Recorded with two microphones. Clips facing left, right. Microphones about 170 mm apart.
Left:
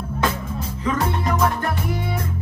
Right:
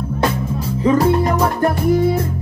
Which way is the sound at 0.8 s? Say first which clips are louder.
Right 9 dB; 35° right (ahead or behind).